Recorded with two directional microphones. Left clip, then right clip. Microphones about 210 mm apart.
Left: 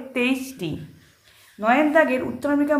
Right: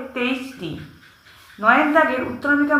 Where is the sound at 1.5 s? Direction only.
30° left (ahead or behind).